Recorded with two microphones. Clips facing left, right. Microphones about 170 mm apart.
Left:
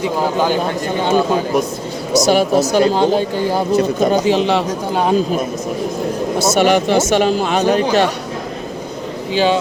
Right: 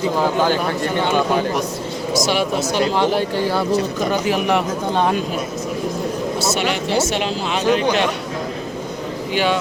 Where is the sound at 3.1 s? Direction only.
15° left (ahead or behind).